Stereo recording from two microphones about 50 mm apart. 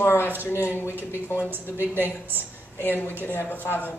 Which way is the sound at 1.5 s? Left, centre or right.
Right.